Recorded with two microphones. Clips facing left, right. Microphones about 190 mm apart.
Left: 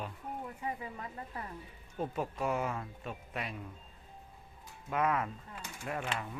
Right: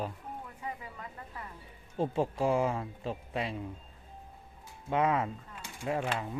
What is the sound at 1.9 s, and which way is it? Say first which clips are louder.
Speech: right 6 dB; 30° right (ahead or behind).